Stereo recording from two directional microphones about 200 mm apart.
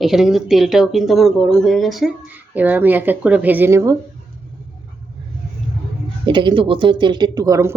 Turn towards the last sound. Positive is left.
turn(degrees=-15)  # may be behind; listen again after turning